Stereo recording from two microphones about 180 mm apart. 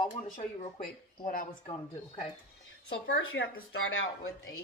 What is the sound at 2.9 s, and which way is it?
Speech, 90° left.